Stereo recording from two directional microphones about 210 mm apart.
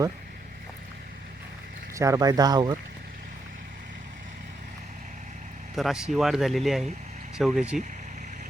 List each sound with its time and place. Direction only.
2.0 s speech: 15° right (ahead or behind)
5.7 s speech: centre (ahead or behind)